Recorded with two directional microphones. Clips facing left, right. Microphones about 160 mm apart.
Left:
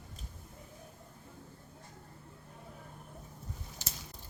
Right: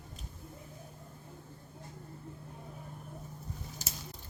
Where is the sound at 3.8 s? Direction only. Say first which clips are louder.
Right 2 dB; 40° right (ahead or behind).